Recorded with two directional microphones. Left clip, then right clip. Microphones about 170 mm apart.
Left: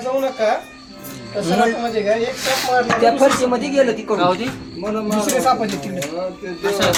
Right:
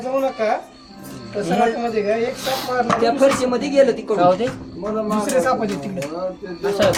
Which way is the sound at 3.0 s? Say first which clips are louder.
Left 2 dB; 25° left (ahead or behind).